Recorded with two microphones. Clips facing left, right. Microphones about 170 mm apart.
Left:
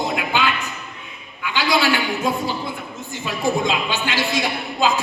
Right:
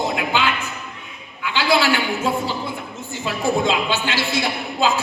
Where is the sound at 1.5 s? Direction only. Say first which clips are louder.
Right 1 dB; 15° left (ahead or behind).